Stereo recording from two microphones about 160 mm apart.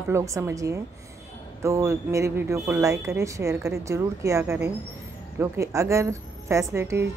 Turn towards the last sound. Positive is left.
turn(degrees=-15)  # may be behind; listen again after turning